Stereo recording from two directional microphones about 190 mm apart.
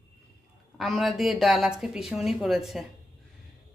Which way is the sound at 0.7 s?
Centre (ahead or behind).